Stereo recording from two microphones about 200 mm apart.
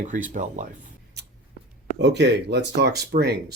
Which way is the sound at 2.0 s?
60° right (ahead or behind).